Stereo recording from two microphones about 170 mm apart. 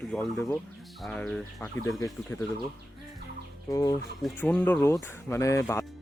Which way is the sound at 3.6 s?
20° left (ahead or behind).